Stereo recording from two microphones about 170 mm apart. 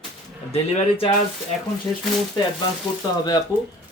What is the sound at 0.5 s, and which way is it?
Speech, 35° left (ahead or behind).